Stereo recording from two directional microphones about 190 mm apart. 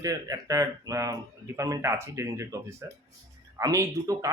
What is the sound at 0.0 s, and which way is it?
Speech, 20° right (ahead or behind).